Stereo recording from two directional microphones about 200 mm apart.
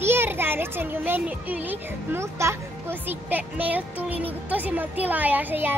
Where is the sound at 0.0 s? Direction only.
10° right (ahead or behind).